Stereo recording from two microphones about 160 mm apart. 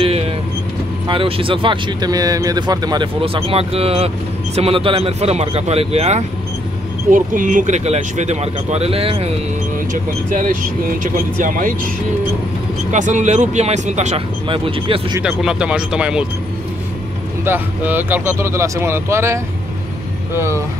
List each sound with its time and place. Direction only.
0.0 s vehicle: 40° right (ahead or behind)
1.0 s speech: 35° right (ahead or behind)
7.1 s speech: 55° right (ahead or behind); by 9.3 s 40° right (ahead or behind)
10.3 s speech: 55° right (ahead or behind)
12.9 s speech: 50° right (ahead or behind); by 15.1 s 35° right (ahead or behind)
15.2 s speech: 5° right (ahead or behind)
17.5 s speech: 10° right (ahead or behind)